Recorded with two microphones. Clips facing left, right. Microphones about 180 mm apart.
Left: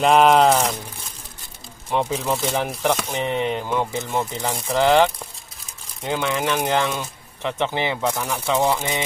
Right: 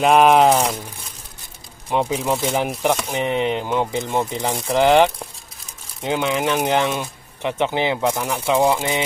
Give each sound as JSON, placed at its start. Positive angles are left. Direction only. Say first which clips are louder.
{"t": 0.0, "sound": "speech", "louder": "right 1 dB", "side_deg": -5}
{"t": 1.9, "sound": "speech", "louder": "right 2 dB", "side_deg": -15}